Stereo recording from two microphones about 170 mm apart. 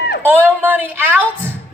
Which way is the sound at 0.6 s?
10° right (ahead or behind).